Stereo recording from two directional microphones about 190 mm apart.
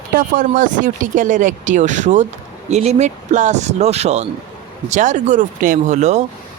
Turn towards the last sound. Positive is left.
turn(degrees=-35)  # may be behind; listen again after turning